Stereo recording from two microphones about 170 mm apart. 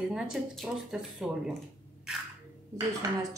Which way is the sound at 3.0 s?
20° right (ahead or behind).